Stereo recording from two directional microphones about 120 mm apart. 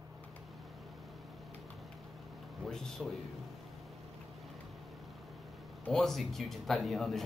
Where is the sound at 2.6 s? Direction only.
Centre (ahead or behind).